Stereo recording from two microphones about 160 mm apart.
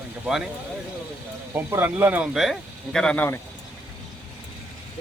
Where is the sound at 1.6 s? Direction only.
15° right (ahead or behind); by 3.3 s 10° left (ahead or behind).